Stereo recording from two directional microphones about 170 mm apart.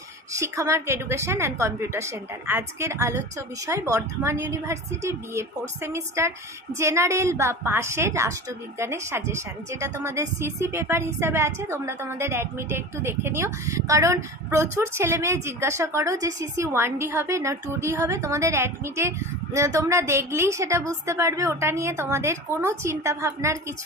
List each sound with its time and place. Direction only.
0.3 s a woman's voice: 20° right (ahead or behind)